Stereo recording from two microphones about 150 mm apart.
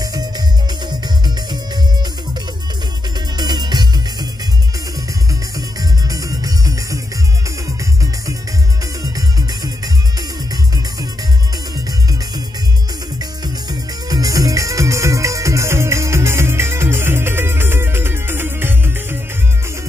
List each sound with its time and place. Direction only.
0.0 s music: 25° right (ahead or behind)
3.3 s music: 30° right (ahead or behind)
5.8 s music: 25° right (ahead or behind)
9.1 s music: 25° right (ahead or behind)
13.2 s music: 25° right (ahead or behind)